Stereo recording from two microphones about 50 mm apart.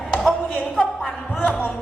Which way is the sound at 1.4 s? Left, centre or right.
Left.